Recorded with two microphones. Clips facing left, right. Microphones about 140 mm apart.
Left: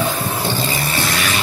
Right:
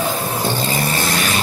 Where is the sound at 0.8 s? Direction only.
45° right (ahead or behind).